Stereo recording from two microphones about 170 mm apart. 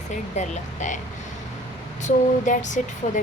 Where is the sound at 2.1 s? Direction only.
45° left (ahead or behind).